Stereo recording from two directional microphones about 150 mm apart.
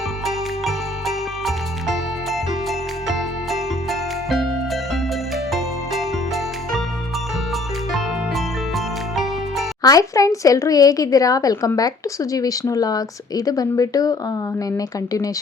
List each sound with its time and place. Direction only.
0.3 s music: centre (ahead or behind)
5.5 s music: centre (ahead or behind)
9.8 s a woman's voice: 25° left (ahead or behind)